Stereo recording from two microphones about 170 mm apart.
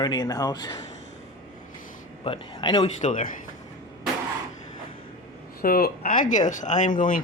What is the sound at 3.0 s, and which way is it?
Speech, 50° left (ahead or behind).